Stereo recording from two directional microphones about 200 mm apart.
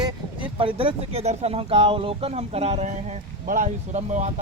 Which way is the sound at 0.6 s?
25° right (ahead or behind).